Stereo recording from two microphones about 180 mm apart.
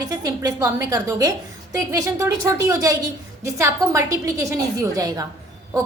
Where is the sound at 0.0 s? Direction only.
20° right (ahead or behind).